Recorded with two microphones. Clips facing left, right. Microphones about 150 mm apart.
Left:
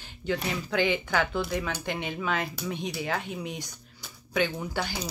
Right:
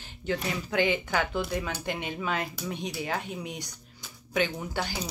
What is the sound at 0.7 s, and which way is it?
Speech, 15° right (ahead or behind).